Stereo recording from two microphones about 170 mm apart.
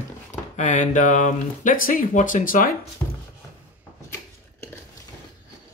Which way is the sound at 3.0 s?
15° left (ahead or behind).